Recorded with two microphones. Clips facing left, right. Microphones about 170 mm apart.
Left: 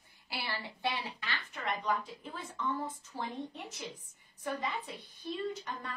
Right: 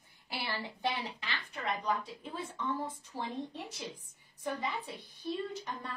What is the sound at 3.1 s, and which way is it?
Speech, 10° right (ahead or behind).